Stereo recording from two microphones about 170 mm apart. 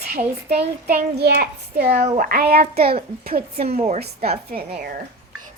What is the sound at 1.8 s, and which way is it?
A child's voice, 45° right (ahead or behind).